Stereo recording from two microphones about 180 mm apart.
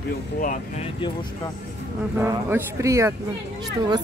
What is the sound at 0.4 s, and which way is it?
Speech, 45° left (ahead or behind).